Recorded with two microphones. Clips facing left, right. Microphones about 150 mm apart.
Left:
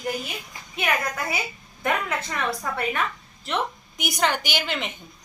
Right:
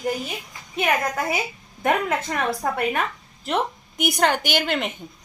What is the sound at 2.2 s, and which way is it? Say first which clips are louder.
Speech: right 3 dB; 45° right (ahead or behind).